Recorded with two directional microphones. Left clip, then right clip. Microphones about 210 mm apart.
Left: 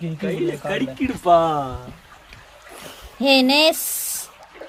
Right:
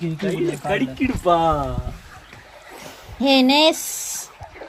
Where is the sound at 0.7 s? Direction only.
Centre (ahead or behind).